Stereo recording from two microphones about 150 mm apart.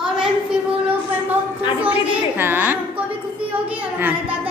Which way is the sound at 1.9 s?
15° right (ahead or behind).